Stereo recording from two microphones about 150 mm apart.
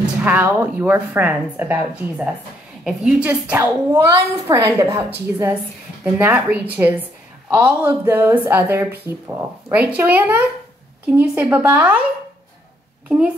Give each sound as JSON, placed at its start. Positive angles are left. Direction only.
{"t": 0.0, "sound": "a woman's voice", "side_deg": -10}